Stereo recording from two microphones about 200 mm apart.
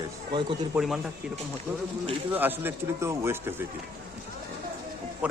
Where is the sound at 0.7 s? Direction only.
Centre (ahead or behind).